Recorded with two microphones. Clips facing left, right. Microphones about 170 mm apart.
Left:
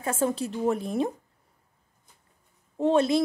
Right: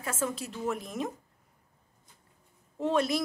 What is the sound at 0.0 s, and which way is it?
A woman's voice, 30° left (ahead or behind).